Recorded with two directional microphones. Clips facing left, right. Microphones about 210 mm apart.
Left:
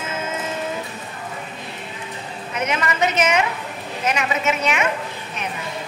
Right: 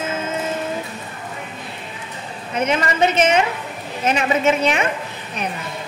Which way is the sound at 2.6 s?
30° right (ahead or behind).